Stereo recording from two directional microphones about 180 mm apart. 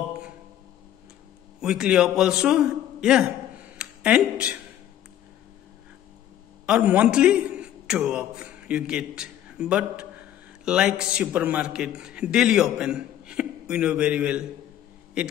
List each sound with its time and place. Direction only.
1.6 s a man's voice: 5° right (ahead or behind)
6.6 s a man's voice: 5° right (ahead or behind)